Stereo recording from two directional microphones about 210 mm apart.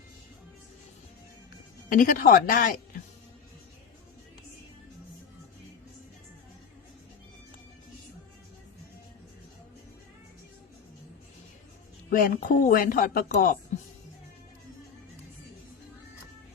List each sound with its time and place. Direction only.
1.9 s a woman's voice: 40° left (ahead or behind)
12.1 s a woman's voice: 40° left (ahead or behind)